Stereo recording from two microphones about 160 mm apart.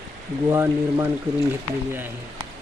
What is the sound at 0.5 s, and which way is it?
Speech, 15° right (ahead or behind).